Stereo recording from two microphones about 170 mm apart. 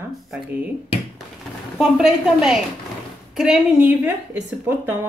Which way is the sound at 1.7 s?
5° right (ahead or behind).